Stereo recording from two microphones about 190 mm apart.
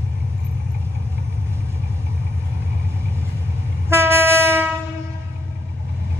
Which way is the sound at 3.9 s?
15° right (ahead or behind).